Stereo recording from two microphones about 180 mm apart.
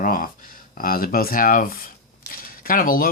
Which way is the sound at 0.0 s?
50° left (ahead or behind).